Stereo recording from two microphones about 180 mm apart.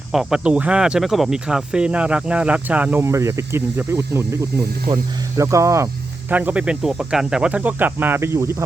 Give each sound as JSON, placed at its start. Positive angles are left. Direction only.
{"t": 0.1, "sound": "speech", "side_deg": -5}
{"t": 5.4, "sound": "speech", "side_deg": -15}